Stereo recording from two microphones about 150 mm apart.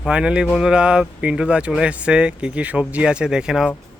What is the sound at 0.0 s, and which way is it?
Speech, 5° right (ahead or behind).